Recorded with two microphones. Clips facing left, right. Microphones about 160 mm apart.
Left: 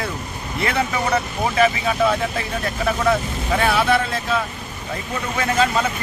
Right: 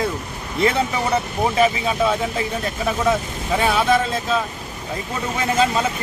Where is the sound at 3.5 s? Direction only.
15° right (ahead or behind).